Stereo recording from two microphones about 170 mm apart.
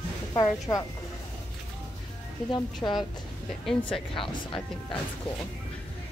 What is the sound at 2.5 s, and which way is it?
Speech, 25° left (ahead or behind).